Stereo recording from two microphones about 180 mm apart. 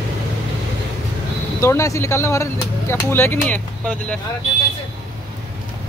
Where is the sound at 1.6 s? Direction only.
15° left (ahead or behind).